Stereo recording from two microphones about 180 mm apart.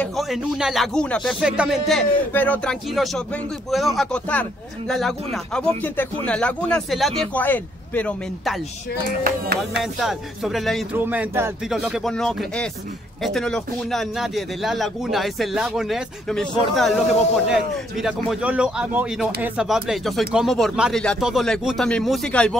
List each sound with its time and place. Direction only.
0.0 s speech: centre (ahead or behind)
9.2 s music: 60° right (ahead or behind)
9.9 s speech: centre (ahead or behind)
11.0 s speech: 10° right (ahead or behind)